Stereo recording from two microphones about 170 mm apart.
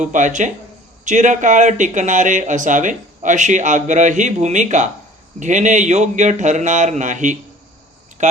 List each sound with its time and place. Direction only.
0.0 s speech: 45° right (ahead or behind)